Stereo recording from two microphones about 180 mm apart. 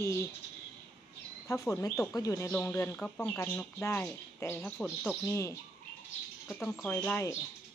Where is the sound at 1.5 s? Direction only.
15° left (ahead or behind).